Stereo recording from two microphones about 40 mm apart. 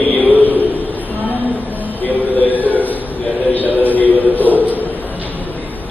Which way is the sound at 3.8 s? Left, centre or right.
Left.